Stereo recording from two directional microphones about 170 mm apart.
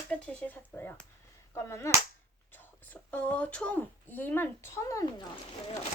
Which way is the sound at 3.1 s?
5° left (ahead or behind).